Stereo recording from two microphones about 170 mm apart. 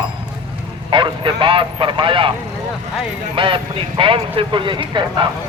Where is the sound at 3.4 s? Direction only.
30° right (ahead or behind).